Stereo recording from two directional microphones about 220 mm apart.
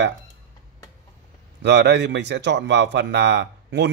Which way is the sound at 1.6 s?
50° right (ahead or behind).